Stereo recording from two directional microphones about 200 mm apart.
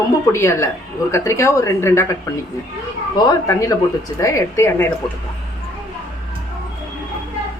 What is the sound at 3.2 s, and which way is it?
A woman's voice, 15° left (ahead or behind).